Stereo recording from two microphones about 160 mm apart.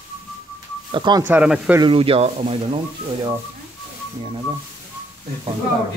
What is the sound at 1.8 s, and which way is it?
Speech, 35° right (ahead or behind).